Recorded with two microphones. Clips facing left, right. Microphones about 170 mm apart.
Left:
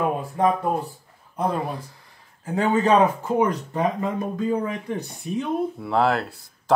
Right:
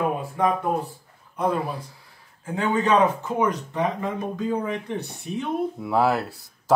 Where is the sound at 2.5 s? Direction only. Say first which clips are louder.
Left 2 dB; 35° left (ahead or behind).